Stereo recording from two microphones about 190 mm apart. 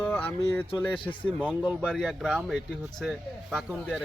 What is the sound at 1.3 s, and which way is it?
Speech, 5° right (ahead or behind).